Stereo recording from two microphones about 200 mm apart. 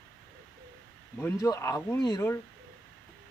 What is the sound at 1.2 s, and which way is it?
Speech, 15° left (ahead or behind).